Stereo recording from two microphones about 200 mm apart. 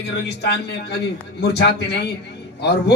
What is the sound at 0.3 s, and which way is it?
A man's voice, 55° left (ahead or behind).